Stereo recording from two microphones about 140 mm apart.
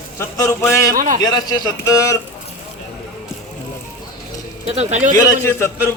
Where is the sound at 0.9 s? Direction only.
70° right (ahead or behind).